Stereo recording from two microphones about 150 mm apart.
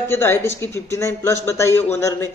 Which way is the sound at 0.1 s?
15° left (ahead or behind).